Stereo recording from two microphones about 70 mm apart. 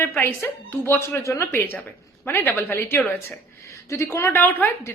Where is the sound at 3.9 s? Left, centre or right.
Left.